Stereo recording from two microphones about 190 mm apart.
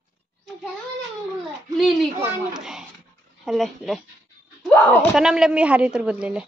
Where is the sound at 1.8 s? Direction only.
Centre (ahead or behind).